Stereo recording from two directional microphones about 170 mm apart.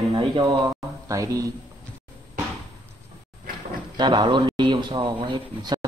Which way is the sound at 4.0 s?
25° right (ahead or behind).